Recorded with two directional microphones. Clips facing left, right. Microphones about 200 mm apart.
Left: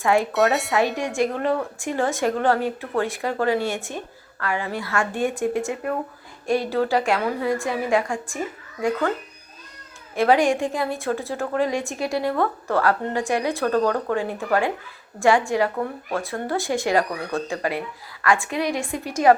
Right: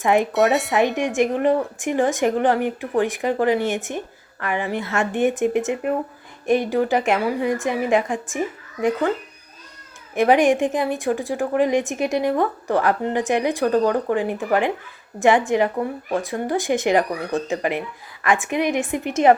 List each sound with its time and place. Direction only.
0.0 s a woman's voice: 20° right (ahead or behind)
0.3 s speech: centre (ahead or behind)
0.7 s a woman's voice: 20° right (ahead or behind)
10.2 s a woman's voice: 20° right (ahead or behind)